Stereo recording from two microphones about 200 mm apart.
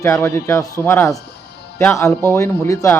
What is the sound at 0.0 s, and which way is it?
Speech, 10° left (ahead or behind).